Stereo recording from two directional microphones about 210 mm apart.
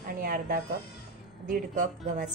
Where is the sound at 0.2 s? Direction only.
45° right (ahead or behind).